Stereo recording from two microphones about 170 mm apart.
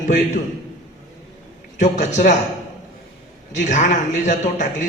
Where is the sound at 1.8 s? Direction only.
45° left (ahead or behind).